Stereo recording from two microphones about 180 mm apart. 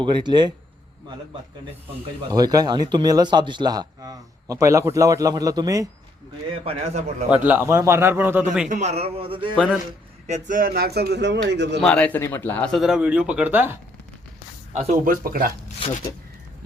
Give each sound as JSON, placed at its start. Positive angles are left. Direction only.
{"t": 0.0, "sound": "a man's voice", "side_deg": -25}
{"t": 2.3, "sound": "a man's voice", "side_deg": -20}
{"t": 6.5, "sound": "a man's voice", "side_deg": -35}
{"t": 7.4, "sound": "a man's voice", "side_deg": -10}
{"t": 8.7, "sound": "a man's voice", "side_deg": -40}
{"t": 10.2, "sound": "a man's voice", "side_deg": -40}
{"t": 11.8, "sound": "a man's voice", "side_deg": 5}
{"t": 14.7, "sound": "speech", "side_deg": -40}